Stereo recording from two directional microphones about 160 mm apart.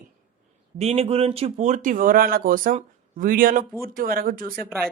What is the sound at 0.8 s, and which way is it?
Speech, 40° right (ahead or behind).